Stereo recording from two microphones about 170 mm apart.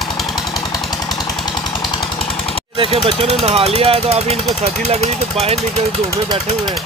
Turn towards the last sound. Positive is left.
turn(degrees=-40)  # may be behind; listen again after turning